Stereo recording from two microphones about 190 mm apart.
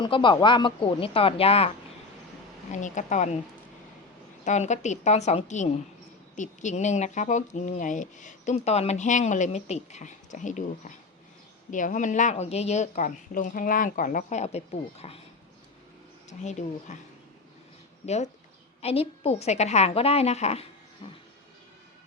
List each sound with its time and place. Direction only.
0.0 s speech: 25° left (ahead or behind)
2.7 s speech: 40° left (ahead or behind)
4.4 s speech: 40° left (ahead or behind)
16.4 s speech: 40° left (ahead or behind)
18.0 s speech: 35° left (ahead or behind)